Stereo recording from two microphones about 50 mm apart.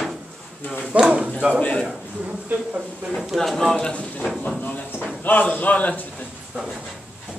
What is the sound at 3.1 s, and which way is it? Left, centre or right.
Speech, centre.